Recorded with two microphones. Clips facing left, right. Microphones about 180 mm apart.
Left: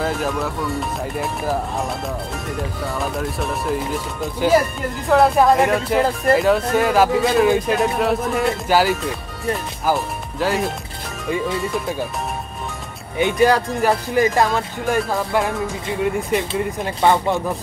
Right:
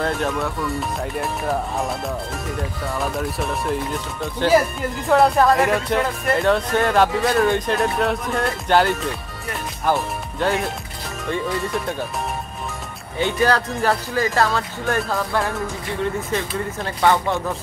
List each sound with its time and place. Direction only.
0.0 s speech: centre (ahead or behind)
3.0 s speech: centre (ahead or behind)
13.2 s speech: 15° left (ahead or behind)